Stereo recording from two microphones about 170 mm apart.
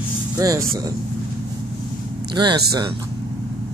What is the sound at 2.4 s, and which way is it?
Speech, 25° right (ahead or behind).